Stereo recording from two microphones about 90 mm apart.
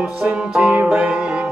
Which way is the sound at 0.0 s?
10° right (ahead or behind).